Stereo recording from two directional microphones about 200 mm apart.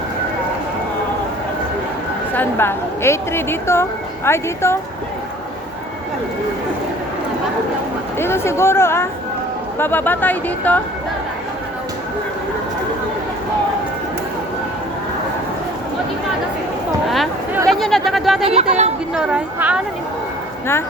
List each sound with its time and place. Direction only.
2.3 s a woman's voice: 10° left (ahead or behind)
8.2 s a woman's voice: 15° left (ahead or behind)
17.1 s a sound: centre (ahead or behind)
17.7 s speech: centre (ahead or behind)
18.4 s speech: 35° right (ahead or behind)
19.1 s speech: 5° right (ahead or behind)